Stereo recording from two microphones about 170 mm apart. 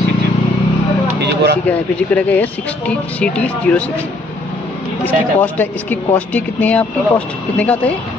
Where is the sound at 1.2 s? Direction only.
75° right (ahead or behind).